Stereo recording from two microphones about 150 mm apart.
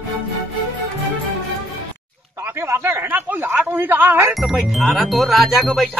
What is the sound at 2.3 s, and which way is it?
A man's voice, 15° right (ahead or behind).